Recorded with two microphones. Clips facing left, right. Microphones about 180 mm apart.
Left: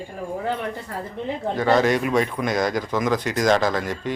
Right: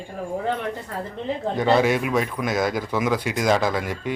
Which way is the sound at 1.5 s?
15° right (ahead or behind).